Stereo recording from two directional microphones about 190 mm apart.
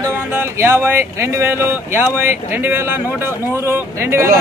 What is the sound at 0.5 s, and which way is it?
Speech, 10° right (ahead or behind).